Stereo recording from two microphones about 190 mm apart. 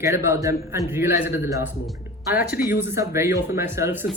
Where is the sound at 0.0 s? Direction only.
15° right (ahead or behind).